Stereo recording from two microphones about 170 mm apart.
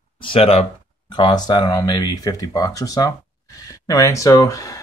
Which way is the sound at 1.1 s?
25° left (ahead or behind).